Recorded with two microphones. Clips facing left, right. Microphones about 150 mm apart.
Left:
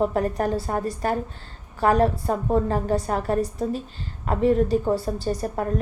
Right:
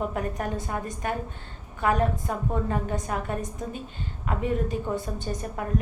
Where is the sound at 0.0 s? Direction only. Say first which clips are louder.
Left 7 dB; 35° left (ahead or behind).